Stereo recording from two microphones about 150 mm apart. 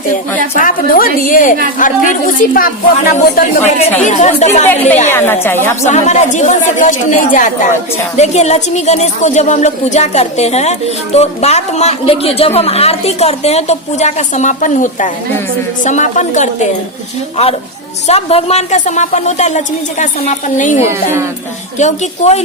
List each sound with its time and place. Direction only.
0.5 s a woman's voice: 65° left (ahead or behind)
2.9 s a woman's voice: 55° left (ahead or behind)
3.7 s speech: 45° left (ahead or behind)
4.6 s a woman's voice: 10° left (ahead or behind)
5.8 s speech: 50° left (ahead or behind)
20.8 s speech: 15° right (ahead or behind)
21.8 s speech: 50° left (ahead or behind)